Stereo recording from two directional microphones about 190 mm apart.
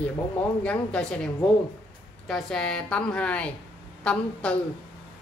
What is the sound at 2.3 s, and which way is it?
A woman's voice, centre (ahead or behind).